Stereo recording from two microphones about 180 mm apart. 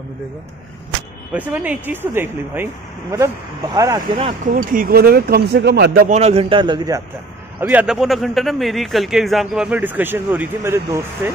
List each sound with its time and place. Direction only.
1.3 s speech: 10° right (ahead or behind)
4.6 s speech: 55° right (ahead or behind)
6.0 s a man's voice: 35° right (ahead or behind)
7.6 s a man's voice: 5° right (ahead or behind)